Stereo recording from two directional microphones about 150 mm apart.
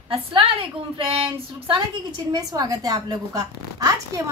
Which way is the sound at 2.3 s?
25° right (ahead or behind).